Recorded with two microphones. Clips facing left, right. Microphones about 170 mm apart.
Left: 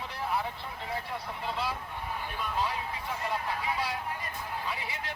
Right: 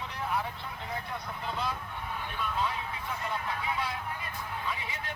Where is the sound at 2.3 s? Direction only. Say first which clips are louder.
Even; 35° left (ahead or behind).